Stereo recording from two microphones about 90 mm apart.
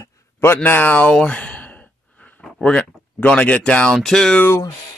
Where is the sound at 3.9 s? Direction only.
5° left (ahead or behind).